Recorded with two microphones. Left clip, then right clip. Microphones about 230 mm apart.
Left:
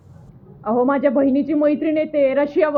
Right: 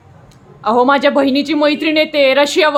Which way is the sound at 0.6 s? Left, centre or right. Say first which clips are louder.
Right 6 dB; centre.